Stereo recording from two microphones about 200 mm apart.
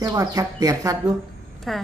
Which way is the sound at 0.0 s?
20° right (ahead or behind).